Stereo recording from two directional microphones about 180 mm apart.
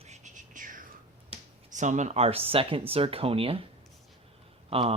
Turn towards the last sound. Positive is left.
turn(degrees=-35)  # may be behind; listen again after turning